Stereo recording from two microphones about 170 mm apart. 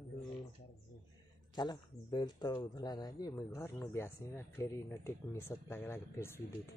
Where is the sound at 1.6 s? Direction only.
25° left (ahead or behind).